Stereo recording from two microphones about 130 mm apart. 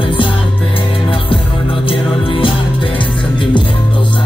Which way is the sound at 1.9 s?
40° left (ahead or behind).